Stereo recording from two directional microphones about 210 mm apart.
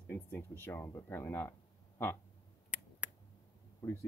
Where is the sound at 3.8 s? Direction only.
10° left (ahead or behind).